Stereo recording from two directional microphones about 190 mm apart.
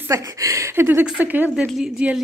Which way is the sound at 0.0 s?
15° right (ahead or behind).